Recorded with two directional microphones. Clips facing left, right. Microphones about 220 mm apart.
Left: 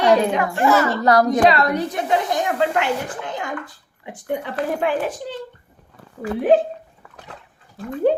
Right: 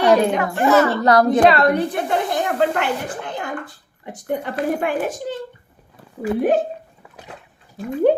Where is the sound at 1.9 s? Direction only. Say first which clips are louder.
Even; 55° right (ahead or behind).